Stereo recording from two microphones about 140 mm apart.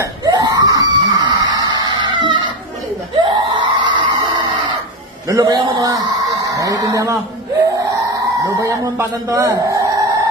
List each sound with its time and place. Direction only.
0.0 s screaming: 30° right (ahead or behind)
5.3 s a man's voice: 30° right (ahead or behind)
8.5 s a man's voice: 20° right (ahead or behind)